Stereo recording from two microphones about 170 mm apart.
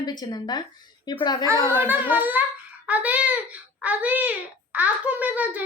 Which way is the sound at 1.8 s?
10° right (ahead or behind).